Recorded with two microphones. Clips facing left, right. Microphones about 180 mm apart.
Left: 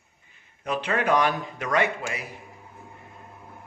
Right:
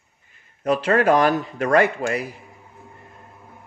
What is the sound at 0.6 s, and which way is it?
Speech, 40° right (ahead or behind).